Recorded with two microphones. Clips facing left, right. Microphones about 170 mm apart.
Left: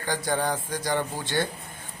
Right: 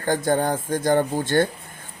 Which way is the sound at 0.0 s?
50° right (ahead or behind).